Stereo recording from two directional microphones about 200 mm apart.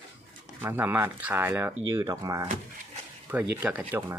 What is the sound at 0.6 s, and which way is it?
Speech, 10° right (ahead or behind).